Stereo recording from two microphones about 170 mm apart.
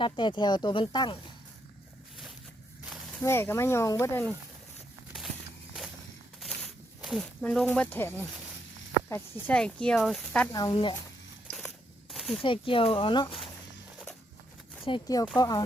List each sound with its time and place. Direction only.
0.0 s speech: 30° left (ahead or behind)
3.2 s speech: 15° left (ahead or behind)
6.4 s snake: centre (ahead or behind)
9.5 s speech: 5° left (ahead or behind)
10.5 s speech: 20° left (ahead or behind)
12.1 s a sound: centre (ahead or behind)
12.4 s speech: 30° left (ahead or behind)
14.8 s speech: 25° left (ahead or behind)